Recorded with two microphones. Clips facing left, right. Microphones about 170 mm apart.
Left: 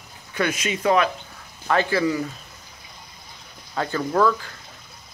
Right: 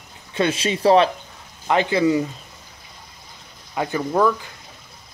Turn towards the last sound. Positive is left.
turn(degrees=-15)  # may be behind; listen again after turning